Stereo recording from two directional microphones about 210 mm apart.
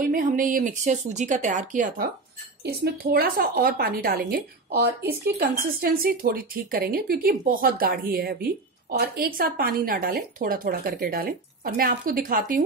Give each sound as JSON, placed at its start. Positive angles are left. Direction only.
{"t": 0.0, "sound": "speech", "side_deg": -40}
{"t": 2.6, "sound": "a woman's voice", "side_deg": -50}